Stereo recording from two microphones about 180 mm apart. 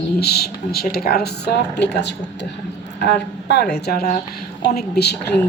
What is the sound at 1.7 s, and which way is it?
A woman's voice, 70° left (ahead or behind).